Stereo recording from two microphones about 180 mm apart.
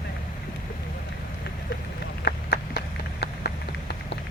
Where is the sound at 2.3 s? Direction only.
75° left (ahead or behind).